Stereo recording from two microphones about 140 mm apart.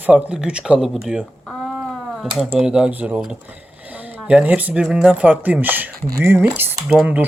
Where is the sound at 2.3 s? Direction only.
5° right (ahead or behind).